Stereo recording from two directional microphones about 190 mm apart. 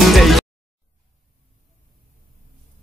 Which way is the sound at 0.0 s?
Centre (ahead or behind).